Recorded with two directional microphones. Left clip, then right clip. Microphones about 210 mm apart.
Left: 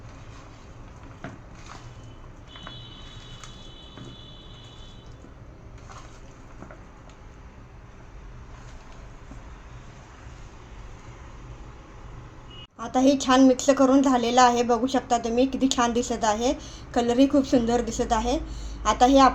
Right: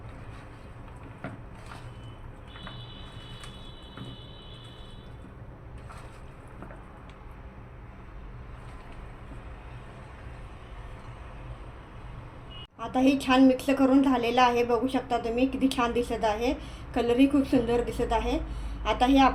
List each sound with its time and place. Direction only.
12.8 s a woman's voice: 25° left (ahead or behind)